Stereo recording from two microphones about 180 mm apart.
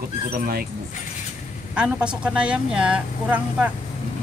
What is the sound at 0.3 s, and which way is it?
Speech, 55° right (ahead or behind).